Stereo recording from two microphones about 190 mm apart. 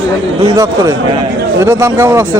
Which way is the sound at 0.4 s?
20° right (ahead or behind).